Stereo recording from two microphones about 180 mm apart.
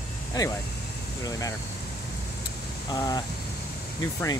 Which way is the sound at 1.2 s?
20° left (ahead or behind).